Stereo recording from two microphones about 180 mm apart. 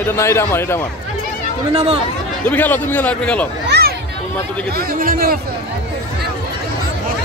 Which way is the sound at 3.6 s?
65° right (ahead or behind).